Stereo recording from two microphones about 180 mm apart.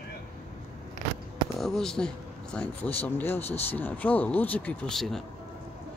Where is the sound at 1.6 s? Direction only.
Centre (ahead or behind).